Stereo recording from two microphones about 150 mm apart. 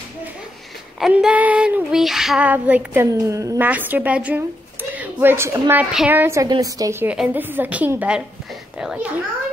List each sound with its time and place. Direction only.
0.9 s child singing: 5° right (ahead or behind)
4.9 s a woman's voice: 15° right (ahead or behind)
5.9 s child singing: 10° right (ahead or behind)
6.5 s a woman's voice: 25° right (ahead or behind)
7.2 s child singing: 10° right (ahead or behind)